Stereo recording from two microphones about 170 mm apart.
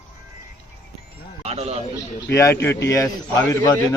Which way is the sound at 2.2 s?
15° left (ahead or behind).